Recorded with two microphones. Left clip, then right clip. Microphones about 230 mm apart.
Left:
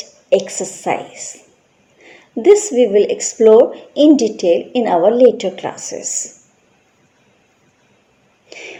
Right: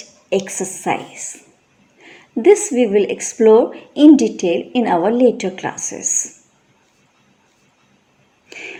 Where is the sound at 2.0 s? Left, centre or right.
Right.